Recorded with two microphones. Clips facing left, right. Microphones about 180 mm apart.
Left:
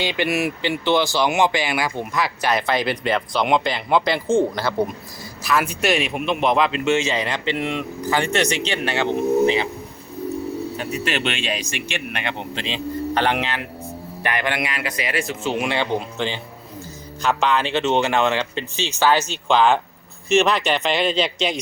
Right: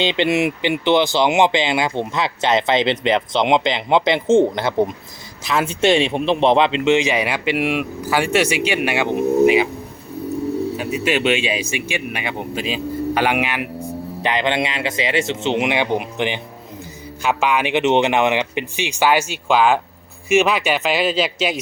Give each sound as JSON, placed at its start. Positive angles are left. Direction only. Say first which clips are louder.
{"t": 0.0, "sound": "speech", "louder": "right 4 dB", "side_deg": -20}
{"t": 10.8, "sound": "speech", "louder": "right 4 dB", "side_deg": -10}